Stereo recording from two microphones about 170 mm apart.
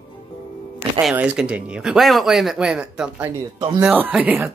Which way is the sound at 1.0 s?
5° right (ahead or behind).